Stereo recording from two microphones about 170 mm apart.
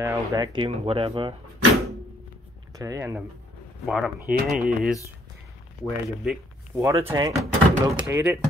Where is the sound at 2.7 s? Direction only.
15° right (ahead or behind).